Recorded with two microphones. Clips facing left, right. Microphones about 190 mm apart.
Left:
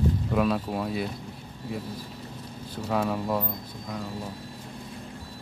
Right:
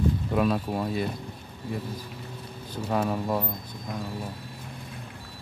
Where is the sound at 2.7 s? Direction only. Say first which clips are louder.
Even; centre (ahead or behind).